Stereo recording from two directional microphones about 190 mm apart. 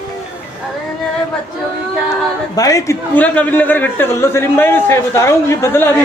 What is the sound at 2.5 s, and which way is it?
A man's voice, 20° left (ahead or behind).